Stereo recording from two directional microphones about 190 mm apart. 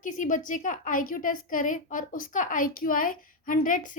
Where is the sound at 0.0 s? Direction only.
45° left (ahead or behind).